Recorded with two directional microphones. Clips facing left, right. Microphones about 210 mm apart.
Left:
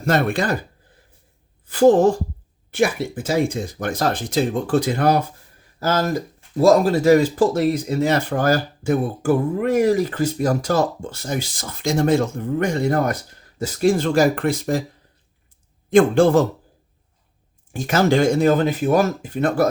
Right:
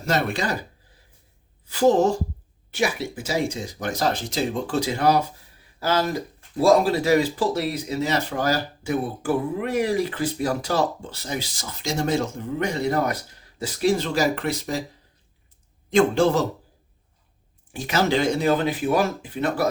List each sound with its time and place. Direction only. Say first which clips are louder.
0.0 s speech: left 5 dB; 55° left (ahead or behind)
1.6 s speech: left 5 dB; 50° left (ahead or behind)
15.9 s speech: left 5 dB; 55° left (ahead or behind)
17.7 s speech: left 5 dB; 50° left (ahead or behind)